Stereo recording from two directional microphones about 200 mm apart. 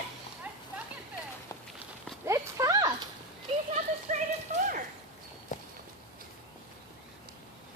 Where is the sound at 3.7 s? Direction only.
35° right (ahead or behind).